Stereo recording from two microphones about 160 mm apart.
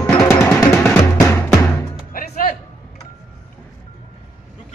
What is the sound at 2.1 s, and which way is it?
Music, 60° left (ahead or behind).